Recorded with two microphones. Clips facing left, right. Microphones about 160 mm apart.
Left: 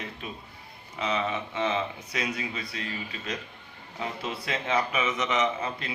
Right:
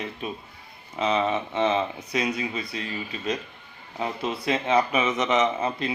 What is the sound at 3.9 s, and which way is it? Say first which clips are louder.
A man's voice: right 5 dB; 20° right (ahead or behind).